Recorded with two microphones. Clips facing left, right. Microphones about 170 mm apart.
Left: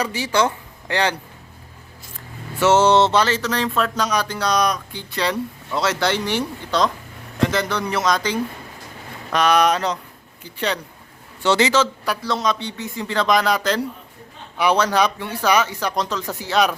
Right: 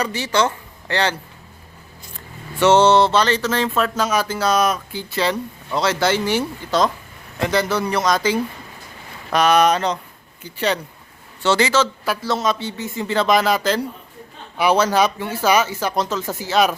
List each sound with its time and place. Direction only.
0.0 s speech: 10° left (ahead or behind)
2.6 s speech: 5° left (ahead or behind)
2.9 s a man's voice: 15° left (ahead or behind)
3.2 s speech: centre (ahead or behind)
11.4 s a man's voice: 20° left (ahead or behind)
12.0 s speech: 5° right (ahead or behind)